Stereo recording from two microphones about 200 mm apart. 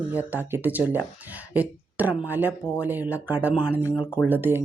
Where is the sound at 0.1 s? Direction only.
10° right (ahead or behind).